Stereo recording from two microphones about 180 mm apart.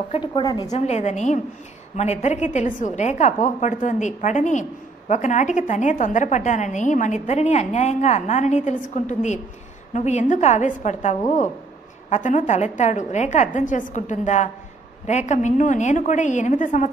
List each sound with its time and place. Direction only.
0.1 s a woman's voice: 25° left (ahead or behind)
0.7 s a woman's voice: 40° left (ahead or behind)